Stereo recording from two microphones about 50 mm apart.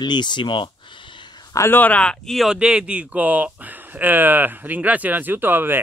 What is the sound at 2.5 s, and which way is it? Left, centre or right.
Speech, centre.